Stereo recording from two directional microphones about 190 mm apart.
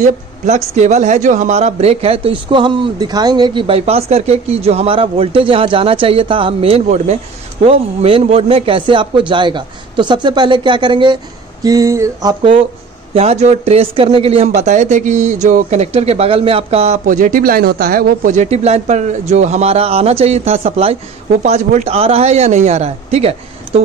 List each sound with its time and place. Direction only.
0.0 s speech: 35° right (ahead or behind)